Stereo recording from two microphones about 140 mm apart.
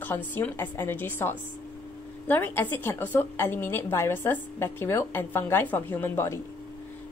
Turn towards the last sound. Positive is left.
turn(degrees=15)  # may be behind; listen again after turning